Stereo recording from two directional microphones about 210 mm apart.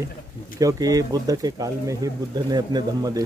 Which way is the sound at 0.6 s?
15° right (ahead or behind).